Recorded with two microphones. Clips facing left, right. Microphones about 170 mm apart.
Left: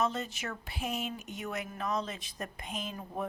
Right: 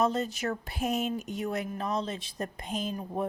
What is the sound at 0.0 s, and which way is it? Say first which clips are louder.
Speech: right 5 dB; 35° right (ahead or behind).